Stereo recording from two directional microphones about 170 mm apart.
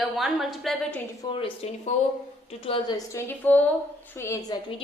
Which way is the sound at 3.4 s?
10° left (ahead or behind).